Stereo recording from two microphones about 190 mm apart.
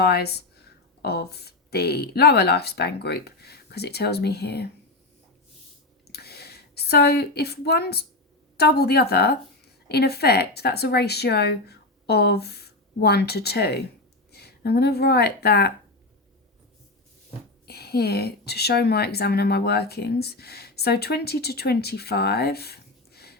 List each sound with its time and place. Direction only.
0.0 s speech: 60° left (ahead or behind)
6.1 s a sound: 60° left (ahead or behind)
8.5 s speech: 60° left (ahead or behind)
17.7 s speech: 55° left (ahead or behind)